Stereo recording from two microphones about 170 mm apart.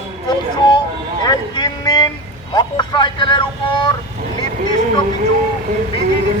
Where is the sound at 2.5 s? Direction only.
25° left (ahead or behind).